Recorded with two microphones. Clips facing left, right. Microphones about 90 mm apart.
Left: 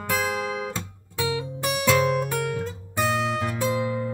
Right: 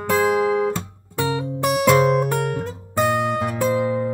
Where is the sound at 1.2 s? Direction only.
45° right (ahead or behind).